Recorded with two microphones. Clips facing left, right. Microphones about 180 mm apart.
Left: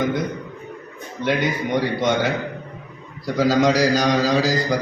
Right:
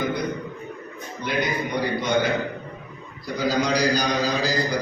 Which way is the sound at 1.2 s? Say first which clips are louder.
Left 4 dB; 85° left.